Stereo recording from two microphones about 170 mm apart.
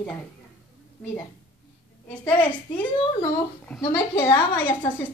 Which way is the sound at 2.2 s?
10° left (ahead or behind).